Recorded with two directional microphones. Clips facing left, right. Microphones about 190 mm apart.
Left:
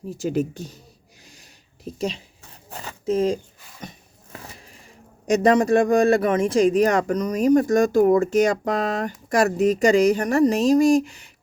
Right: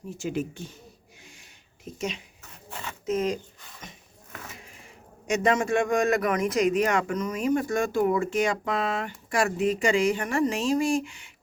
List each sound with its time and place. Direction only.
0.2 s a man's voice: 40° left (ahead or behind)
1.2 s a sound: 35° left (ahead or behind)
5.3 s a man's voice: 35° left (ahead or behind)